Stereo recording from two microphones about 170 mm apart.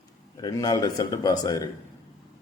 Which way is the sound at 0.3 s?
20° left (ahead or behind).